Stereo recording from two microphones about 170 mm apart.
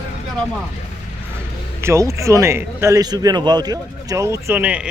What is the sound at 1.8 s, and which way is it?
A man's voice, 15° right (ahead or behind).